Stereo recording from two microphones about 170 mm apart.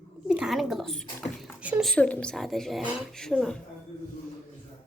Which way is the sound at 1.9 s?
5° left (ahead or behind).